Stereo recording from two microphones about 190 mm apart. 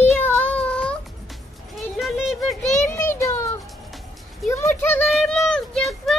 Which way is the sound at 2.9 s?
15° left (ahead or behind).